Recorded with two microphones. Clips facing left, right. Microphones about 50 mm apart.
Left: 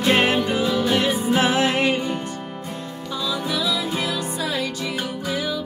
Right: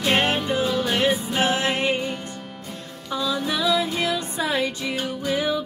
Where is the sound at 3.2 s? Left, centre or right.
Right.